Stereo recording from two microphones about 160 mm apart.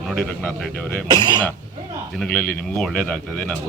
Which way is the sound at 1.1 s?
30° right (ahead or behind).